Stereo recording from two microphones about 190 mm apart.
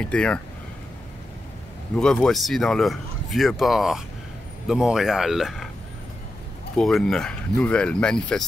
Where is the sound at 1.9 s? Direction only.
5° left (ahead or behind).